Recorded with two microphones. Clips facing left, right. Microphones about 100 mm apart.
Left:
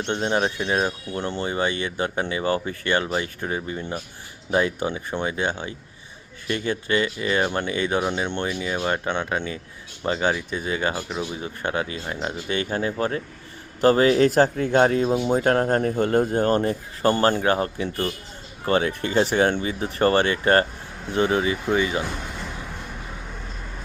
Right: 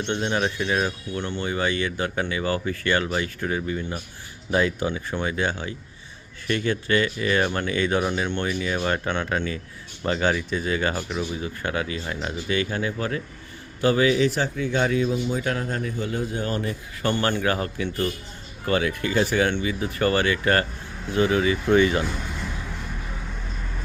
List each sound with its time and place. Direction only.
0.0 s speech: 30° left (ahead or behind); by 11.3 s 15° left (ahead or behind)
11.4 s speech: 25° left (ahead or behind)
15.1 s speech: 60° left (ahead or behind)
15.4 s speech: 45° left (ahead or behind); by 21.6 s 25° left (ahead or behind)
21.7 s speech: 15° left (ahead or behind)